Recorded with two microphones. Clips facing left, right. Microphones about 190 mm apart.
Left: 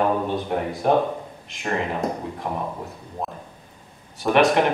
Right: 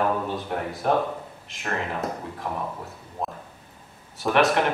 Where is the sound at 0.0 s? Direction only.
15° left (ahead or behind).